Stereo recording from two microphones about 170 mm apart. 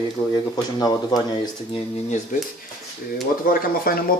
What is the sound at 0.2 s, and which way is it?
Speech, 30° left (ahead or behind).